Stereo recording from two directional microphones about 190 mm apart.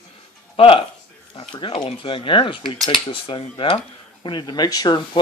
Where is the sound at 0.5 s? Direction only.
30° left (ahead or behind).